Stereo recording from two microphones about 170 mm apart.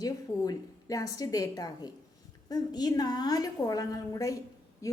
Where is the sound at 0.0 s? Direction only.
20° left (ahead or behind).